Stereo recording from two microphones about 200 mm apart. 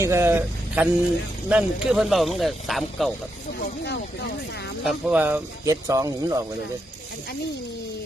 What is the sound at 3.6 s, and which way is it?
Speech, 55° left (ahead or behind).